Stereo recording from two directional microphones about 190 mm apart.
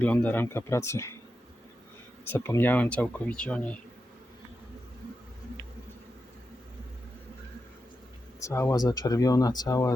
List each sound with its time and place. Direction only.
0.0 s speech: 10° left (ahead or behind)
2.3 s speech: 10° left (ahead or behind)
8.4 s speech: 15° left (ahead or behind)